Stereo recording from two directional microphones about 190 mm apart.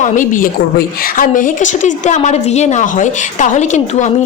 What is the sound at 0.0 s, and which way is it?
A woman's voice, 45° left (ahead or behind).